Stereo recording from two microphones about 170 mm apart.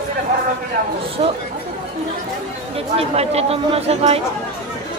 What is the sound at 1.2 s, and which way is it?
Speech, 40° right (ahead or behind).